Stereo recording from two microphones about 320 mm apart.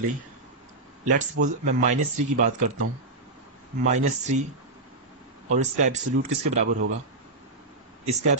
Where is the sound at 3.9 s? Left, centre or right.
Right.